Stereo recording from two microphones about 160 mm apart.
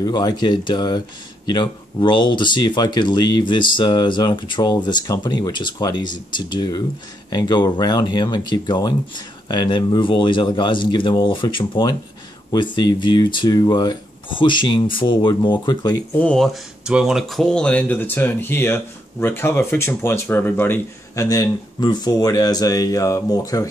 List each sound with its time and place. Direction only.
0.0 s speech: 25° left (ahead or behind)
16.2 s speech: 5° left (ahead or behind); by 23.7 s 20° left (ahead or behind)